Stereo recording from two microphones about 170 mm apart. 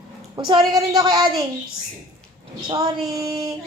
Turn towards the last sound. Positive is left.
turn(degrees=-20)  # may be behind; listen again after turning